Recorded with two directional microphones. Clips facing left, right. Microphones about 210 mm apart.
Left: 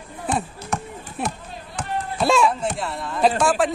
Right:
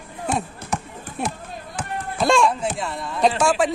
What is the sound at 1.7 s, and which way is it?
Speech, centre (ahead or behind).